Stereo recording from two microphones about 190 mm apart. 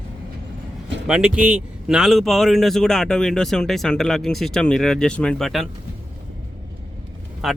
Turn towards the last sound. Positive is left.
turn(degrees=0)  # may be behind; listen again after turning